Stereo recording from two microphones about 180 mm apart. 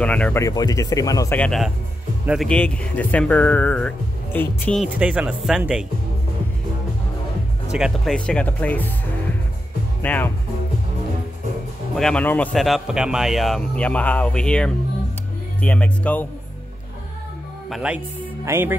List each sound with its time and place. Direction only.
0.0 s speech: 5° left (ahead or behind)
1.4 s a man's voice: centre (ahead or behind)
4.8 s speech: 5° right (ahead or behind)
7.7 s speech: centre (ahead or behind)
10.0 s speech: 10° left (ahead or behind)
11.9 s a man's voice: 5° left (ahead or behind)
17.6 s speech: 5° right (ahead or behind)